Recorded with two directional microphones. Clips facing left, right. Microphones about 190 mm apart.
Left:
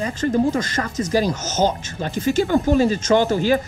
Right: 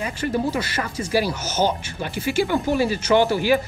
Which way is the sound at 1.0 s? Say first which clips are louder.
Left 2 dB; 10° right (ahead or behind).